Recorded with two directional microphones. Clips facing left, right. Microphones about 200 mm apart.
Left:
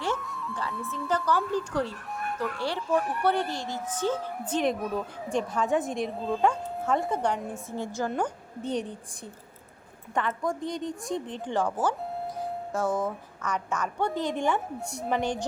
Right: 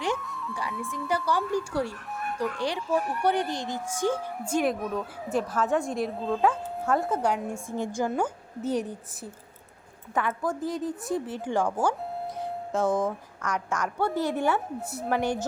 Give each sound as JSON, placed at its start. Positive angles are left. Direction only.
{"t": 0.2, "sound": "music", "side_deg": 0}
{"t": 0.9, "sound": "speech", "side_deg": -15}
{"t": 3.2, "sound": "speech", "side_deg": -15}